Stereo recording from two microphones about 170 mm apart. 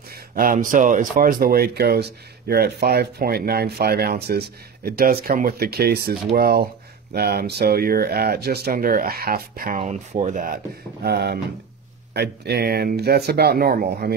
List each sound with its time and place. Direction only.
0.3 s speech: 55° right (ahead or behind)
9.8 s speech: 40° right (ahead or behind); by 14.1 s 65° right (ahead or behind)